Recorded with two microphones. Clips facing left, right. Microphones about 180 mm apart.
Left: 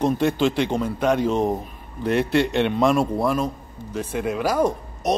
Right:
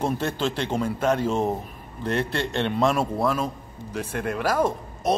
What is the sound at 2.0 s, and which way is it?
A man's voice, 5° left (ahead or behind).